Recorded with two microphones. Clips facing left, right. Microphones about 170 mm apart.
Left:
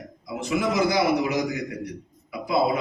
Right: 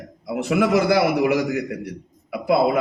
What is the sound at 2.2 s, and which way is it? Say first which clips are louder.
Speech: right 4 dB; 65° right (ahead or behind).